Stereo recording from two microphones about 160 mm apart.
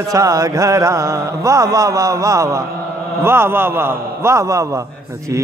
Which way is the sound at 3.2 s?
15° right (ahead or behind).